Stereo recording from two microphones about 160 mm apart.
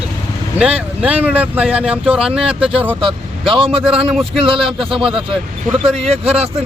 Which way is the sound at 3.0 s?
35° right (ahead or behind).